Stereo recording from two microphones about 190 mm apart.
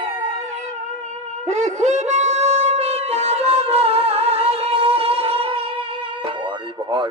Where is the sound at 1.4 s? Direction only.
40° right (ahead or behind).